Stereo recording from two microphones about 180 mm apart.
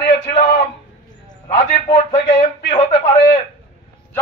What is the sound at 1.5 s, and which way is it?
A man's voice, 30° left (ahead or behind).